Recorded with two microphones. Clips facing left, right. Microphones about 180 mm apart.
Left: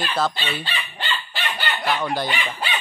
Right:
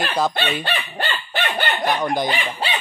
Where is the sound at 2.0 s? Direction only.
15° right (ahead or behind).